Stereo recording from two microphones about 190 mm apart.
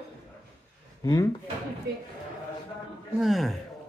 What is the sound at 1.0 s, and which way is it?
Speech, 20° left (ahead or behind).